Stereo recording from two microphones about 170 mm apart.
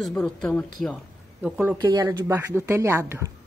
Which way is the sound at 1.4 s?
10° right (ahead or behind).